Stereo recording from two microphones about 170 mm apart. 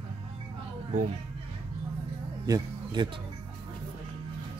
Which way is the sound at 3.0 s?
25° right (ahead or behind).